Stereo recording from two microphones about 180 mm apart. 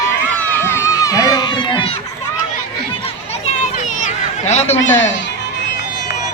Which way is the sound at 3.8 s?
40° left (ahead or behind).